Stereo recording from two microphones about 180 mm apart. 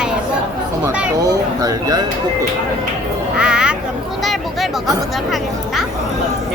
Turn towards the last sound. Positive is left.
turn(degrees=0)  # may be behind; listen again after turning